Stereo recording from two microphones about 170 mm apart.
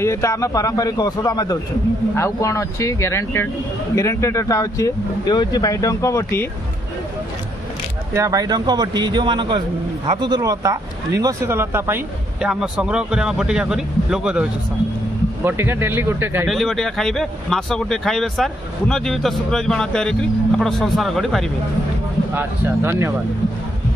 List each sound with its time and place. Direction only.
0.0 s speech: 15° left (ahead or behind)
8.1 s a man's voice: 20° right (ahead or behind)
16.4 s speech: centre (ahead or behind)
22.3 s speech: 15° right (ahead or behind)